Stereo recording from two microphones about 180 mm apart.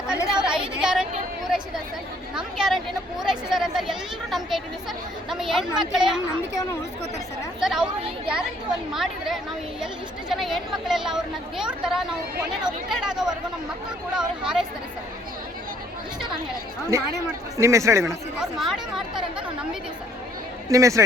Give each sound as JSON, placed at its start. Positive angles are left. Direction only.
{"t": 0.3, "sound": "chatter", "side_deg": -5}
{"t": 0.8, "sound": "a sound", "side_deg": -5}
{"t": 1.5, "sound": "chatter", "side_deg": -5}
{"t": 2.6, "sound": "a sound", "side_deg": 0}
{"t": 5.3, "sound": "a woman's voice", "side_deg": 0}
{"t": 7.6, "sound": "speech", "side_deg": -5}
{"t": 8.9, "sound": "speech", "side_deg": 0}
{"t": 14.2, "sound": "chatter", "side_deg": -5}
{"t": 16.9, "sound": "a man's voice", "side_deg": -15}
{"t": 18.3, "sound": "chatter", "side_deg": 0}
{"t": 20.7, "sound": "a man's voice", "side_deg": -15}